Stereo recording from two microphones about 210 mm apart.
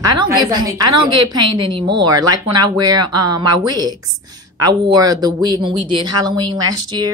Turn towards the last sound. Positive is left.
turn(degrees=-20)  # may be behind; listen again after turning